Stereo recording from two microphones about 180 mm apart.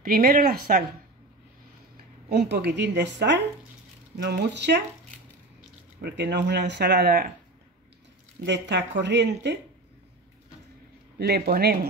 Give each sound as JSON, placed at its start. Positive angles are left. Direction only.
{"t": 0.0, "sound": "speech", "side_deg": -55}
{"t": 2.2, "sound": "speech", "side_deg": -65}
{"t": 5.9, "sound": "speech", "side_deg": -70}
{"t": 8.5, "sound": "speech", "side_deg": -75}
{"t": 11.1, "sound": "speech", "side_deg": -60}